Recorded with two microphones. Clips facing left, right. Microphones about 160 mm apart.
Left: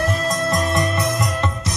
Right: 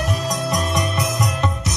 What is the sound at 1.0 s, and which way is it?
Music, centre (ahead or behind).